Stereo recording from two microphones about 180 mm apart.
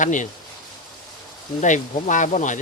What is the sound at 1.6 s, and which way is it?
Speech, 45° left (ahead or behind).